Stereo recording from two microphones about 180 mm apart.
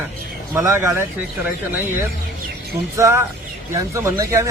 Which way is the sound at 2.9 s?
15° right (ahead or behind).